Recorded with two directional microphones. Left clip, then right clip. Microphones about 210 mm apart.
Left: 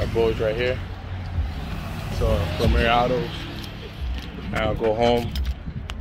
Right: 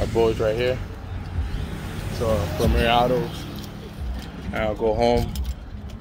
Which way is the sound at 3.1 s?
50° right (ahead or behind).